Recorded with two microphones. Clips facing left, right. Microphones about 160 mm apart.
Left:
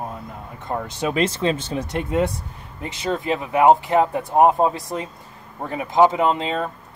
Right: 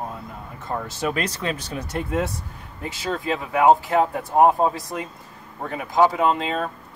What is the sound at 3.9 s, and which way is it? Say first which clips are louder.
Speech: left 2 dB; 20° left (ahead or behind).